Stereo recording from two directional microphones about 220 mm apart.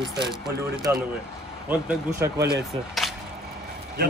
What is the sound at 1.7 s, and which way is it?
Speech, 10° right (ahead or behind).